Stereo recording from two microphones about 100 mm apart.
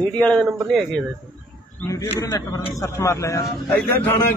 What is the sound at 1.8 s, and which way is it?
A man's voice, 35° left (ahead or behind).